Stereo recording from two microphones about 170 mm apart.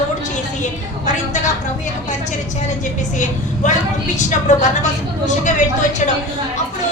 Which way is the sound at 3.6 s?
45° left (ahead or behind).